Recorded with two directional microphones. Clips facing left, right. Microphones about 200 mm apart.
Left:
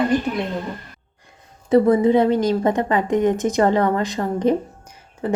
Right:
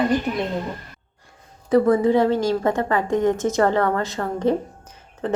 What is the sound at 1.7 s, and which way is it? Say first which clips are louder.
A woman's voice: left 2 dB; 20° left (ahead or behind).